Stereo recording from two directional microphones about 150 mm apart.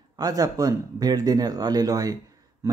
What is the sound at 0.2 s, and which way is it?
Speech, 25° right (ahead or behind).